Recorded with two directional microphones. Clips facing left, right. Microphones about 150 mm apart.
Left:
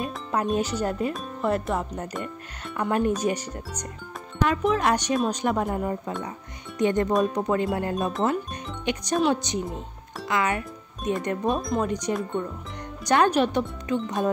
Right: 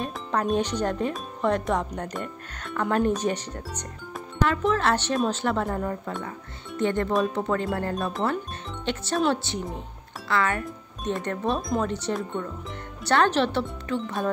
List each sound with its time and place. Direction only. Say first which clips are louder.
0.0 s speech: even; 10° left (ahead or behind)